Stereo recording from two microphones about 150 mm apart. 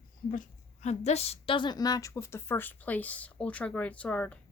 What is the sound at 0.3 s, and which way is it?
A woman's voice, 55° left (ahead or behind).